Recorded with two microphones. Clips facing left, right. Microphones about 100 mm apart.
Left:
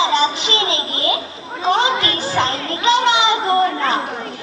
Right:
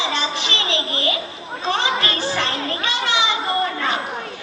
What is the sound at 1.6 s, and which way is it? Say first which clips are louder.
A woman's voice: left 5 dB; 20° left (ahead or behind).